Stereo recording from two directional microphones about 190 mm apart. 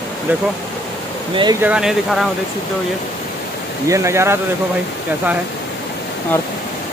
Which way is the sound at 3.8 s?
15° right (ahead or behind).